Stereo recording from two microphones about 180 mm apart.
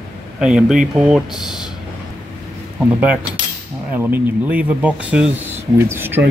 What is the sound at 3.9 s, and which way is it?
Speech, 10° right (ahead or behind).